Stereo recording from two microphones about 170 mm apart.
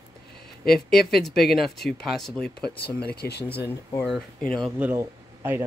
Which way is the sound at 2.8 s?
65° left (ahead or behind).